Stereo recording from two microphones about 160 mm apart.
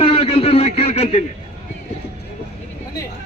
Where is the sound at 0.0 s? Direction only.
35° left (ahead or behind).